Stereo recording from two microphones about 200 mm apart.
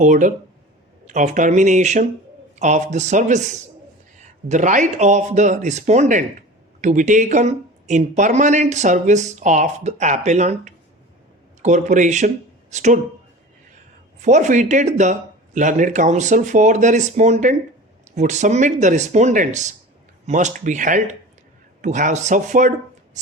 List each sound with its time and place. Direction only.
0.0 s speech: 40° right (ahead or behind)
14.2 s speech: 35° right (ahead or behind)
23.2 s music: 35° right (ahead or behind)